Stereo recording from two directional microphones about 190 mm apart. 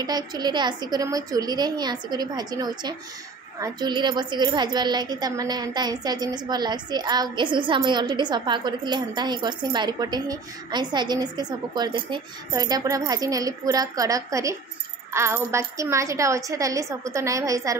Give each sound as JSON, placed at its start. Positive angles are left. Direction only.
{"t": 0.0, "sound": "a woman's voice", "side_deg": -20}